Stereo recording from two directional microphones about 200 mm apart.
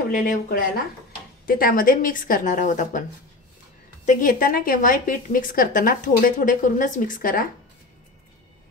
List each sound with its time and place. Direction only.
0.1 s a woman's voice: 45° left (ahead or behind)
4.0 s a woman's voice: 40° left (ahead or behind)